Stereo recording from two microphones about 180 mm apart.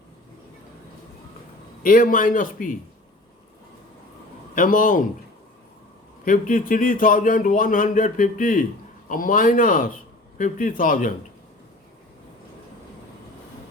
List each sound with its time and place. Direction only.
1.8 s speech: 50° left (ahead or behind)
4.5 s speech: 50° left (ahead or behind)
6.2 s speech: 50° left (ahead or behind)